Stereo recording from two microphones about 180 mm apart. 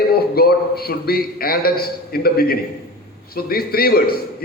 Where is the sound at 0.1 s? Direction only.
60° left (ahead or behind).